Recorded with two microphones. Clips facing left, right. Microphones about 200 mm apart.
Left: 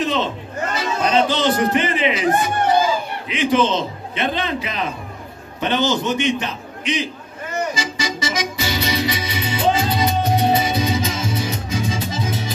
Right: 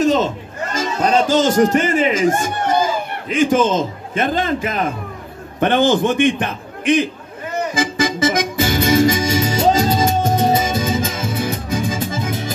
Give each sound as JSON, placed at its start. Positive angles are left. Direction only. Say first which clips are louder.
{"t": 0.0, "sound": "a sound", "louder": "right 6 dB", "side_deg": -45}
{"t": 0.7, "sound": "a man's voice", "louder": "right 2 dB", "side_deg": -45}
{"t": 7.7, "sound": "music", "louder": "right 6 dB", "side_deg": -55}